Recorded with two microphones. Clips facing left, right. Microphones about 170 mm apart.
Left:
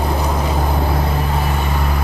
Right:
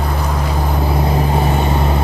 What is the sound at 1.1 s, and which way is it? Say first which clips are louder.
Vehicle: right 4 dB; 25° right (ahead or behind).